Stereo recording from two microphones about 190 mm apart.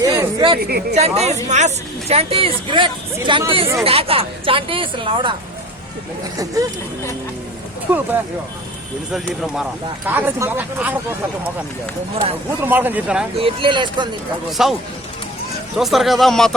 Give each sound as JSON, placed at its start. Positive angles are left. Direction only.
{"t": 0.0, "sound": "a sound", "side_deg": -15}
{"t": 0.6, "sound": "speech", "side_deg": -55}
{"t": 0.9, "sound": "speech", "side_deg": -35}
{"t": 6.4, "sound": "speech", "side_deg": -20}
{"t": 10.1, "sound": "speech", "side_deg": -10}
{"t": 12.1, "sound": "speech", "side_deg": -30}
{"t": 12.6, "sound": "speech", "side_deg": -10}
{"t": 13.4, "sound": "speech", "side_deg": -25}
{"t": 14.6, "sound": "speech", "side_deg": 0}
{"t": 15.8, "sound": "speech", "side_deg": 0}